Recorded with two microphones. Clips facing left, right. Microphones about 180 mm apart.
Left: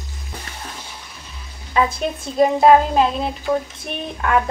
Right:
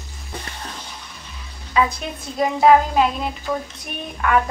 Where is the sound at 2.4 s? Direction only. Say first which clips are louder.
Left 2 dB; 25° left (ahead or behind).